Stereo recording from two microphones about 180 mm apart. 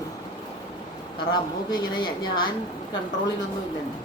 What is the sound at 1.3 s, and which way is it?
Speech, 25° left (ahead or behind).